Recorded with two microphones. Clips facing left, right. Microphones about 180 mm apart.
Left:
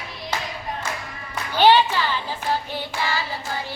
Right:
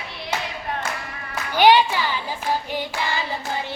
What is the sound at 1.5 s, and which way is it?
Clapping, 15° right (ahead or behind).